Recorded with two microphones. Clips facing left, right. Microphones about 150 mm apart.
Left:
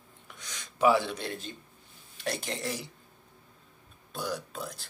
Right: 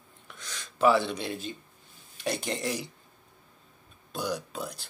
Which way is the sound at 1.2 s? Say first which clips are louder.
Right 3 dB; 10° right (ahead or behind).